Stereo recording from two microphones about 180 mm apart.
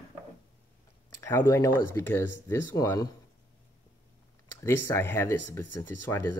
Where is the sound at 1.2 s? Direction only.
15° left (ahead or behind).